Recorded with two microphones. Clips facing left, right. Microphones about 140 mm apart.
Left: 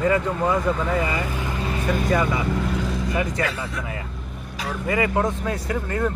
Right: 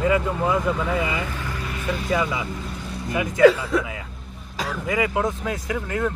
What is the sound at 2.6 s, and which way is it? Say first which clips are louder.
Vehicle: left 8 dB; 90° left.